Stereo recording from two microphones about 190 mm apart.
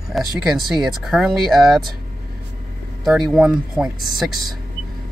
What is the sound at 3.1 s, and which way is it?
Speech, centre (ahead or behind).